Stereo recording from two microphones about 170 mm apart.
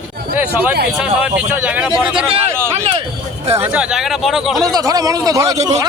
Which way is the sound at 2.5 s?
15° right (ahead or behind).